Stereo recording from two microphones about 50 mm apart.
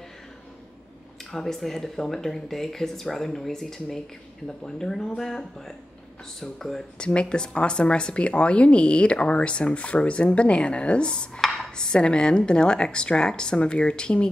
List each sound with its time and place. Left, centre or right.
1.3 s speech: centre
7.0 s speech: left